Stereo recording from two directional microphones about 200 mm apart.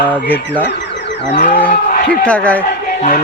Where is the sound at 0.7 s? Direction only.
60° left (ahead or behind).